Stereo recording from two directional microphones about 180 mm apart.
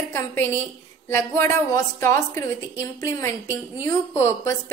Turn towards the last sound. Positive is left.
turn(degrees=15)  # may be behind; listen again after turning